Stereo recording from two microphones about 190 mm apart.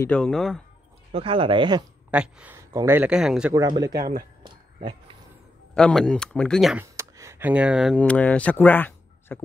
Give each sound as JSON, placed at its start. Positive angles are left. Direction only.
{"t": 0.0, "sound": "speech", "side_deg": 5}
{"t": 1.1, "sound": "speech", "side_deg": -30}
{"t": 2.0, "sound": "speech", "side_deg": -5}
{"t": 3.5, "sound": "speech", "side_deg": -20}
{"t": 5.8, "sound": "speech", "side_deg": 5}
{"t": 6.8, "sound": "speech", "side_deg": -15}